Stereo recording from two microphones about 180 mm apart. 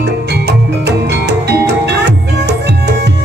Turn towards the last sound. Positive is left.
turn(degrees=-70)  # may be behind; listen again after turning